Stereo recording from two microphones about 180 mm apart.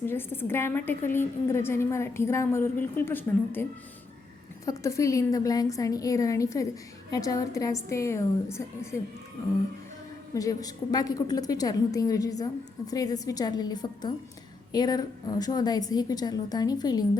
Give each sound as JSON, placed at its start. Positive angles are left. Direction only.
{"t": 0.0, "sound": "a woman's voice", "side_deg": 10}
{"t": 10.3, "sound": "a woman's voice", "side_deg": 20}